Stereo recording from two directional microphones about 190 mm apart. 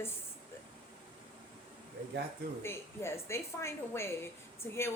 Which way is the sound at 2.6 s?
15° left (ahead or behind).